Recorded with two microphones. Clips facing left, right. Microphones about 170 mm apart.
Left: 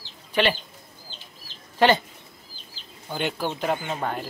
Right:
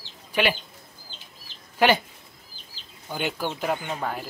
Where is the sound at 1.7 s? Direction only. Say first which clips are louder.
Left 1 dB; 10° right (ahead or behind).